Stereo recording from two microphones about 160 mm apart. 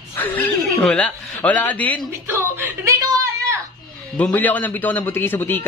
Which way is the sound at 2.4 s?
15° right (ahead or behind).